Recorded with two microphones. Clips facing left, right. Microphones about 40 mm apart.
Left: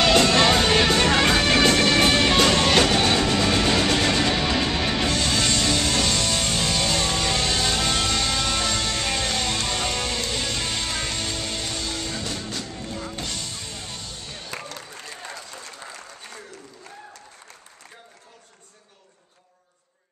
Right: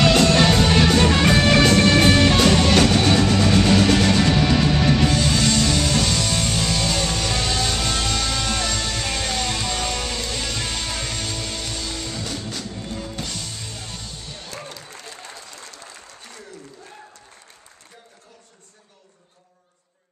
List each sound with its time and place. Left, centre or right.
0.0 s music: centre
5.0 s music: centre
14.5 s applause: left